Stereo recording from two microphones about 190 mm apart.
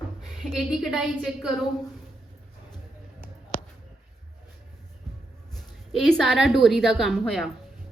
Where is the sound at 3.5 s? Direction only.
50° left (ahead or behind).